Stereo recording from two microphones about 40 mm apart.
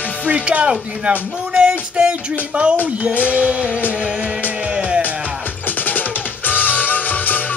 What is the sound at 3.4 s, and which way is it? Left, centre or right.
Speech, right.